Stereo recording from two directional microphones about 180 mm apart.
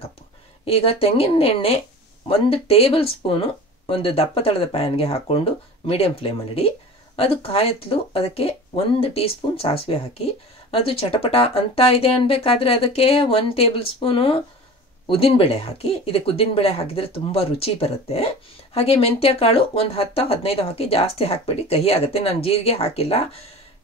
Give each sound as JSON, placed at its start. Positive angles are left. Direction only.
{"t": 0.7, "sound": "speech", "side_deg": 30}